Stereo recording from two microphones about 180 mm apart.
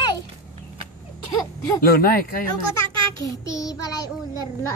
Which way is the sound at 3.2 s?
20° left (ahead or behind).